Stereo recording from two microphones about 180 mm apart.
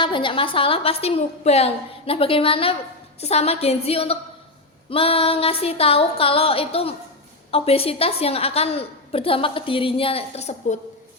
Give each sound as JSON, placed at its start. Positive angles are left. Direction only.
{"t": 0.0, "sound": "a woman's voice", "side_deg": 30}